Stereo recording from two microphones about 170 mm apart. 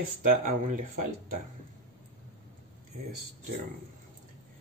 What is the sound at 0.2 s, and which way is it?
Speech, 50° right (ahead or behind).